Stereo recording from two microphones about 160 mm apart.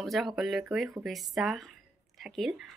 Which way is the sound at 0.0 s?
Centre (ahead or behind).